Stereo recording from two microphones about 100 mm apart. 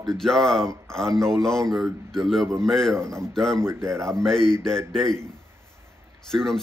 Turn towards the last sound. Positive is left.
turn(degrees=5)  # may be behind; listen again after turning